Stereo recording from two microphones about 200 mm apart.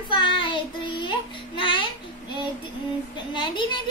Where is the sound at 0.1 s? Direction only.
25° left (ahead or behind).